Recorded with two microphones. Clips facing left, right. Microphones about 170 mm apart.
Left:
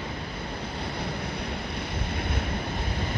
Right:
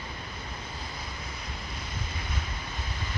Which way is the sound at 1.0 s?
65° left (ahead or behind).